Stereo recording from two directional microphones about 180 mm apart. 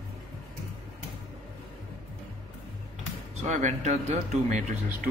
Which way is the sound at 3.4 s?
40° right (ahead or behind).